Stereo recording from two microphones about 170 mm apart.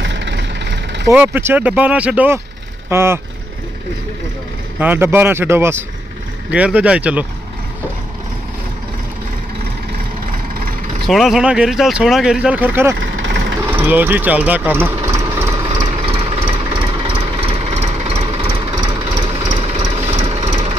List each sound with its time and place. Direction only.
0.0 s vehicle: 90° right
1.1 s speech: 15° right (ahead or behind)
4.7 s speech: 10° right (ahead or behind)
11.1 s speech: centre (ahead or behind)
13.0 s vehicle: 90° right
13.6 s engine: 10° right (ahead or behind)
16.1 s jackhammer: 30° right (ahead or behind)
20.1 s engine: 40° right (ahead or behind)